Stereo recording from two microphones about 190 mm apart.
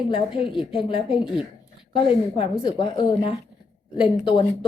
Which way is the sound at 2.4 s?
30° left (ahead or behind).